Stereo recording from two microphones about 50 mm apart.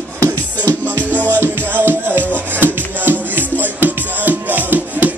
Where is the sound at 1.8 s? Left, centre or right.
Right.